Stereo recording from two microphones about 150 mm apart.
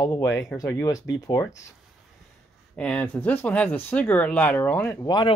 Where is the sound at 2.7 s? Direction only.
10° left (ahead or behind).